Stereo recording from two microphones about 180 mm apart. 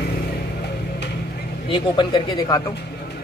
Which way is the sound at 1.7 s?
25° left (ahead or behind).